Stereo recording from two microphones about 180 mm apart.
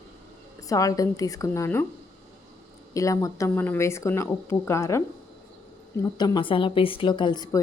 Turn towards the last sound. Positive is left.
turn(degrees=25)  # may be behind; listen again after turning